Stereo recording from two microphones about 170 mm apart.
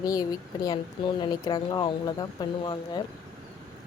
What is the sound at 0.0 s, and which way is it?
A woman's voice, 20° left (ahead or behind).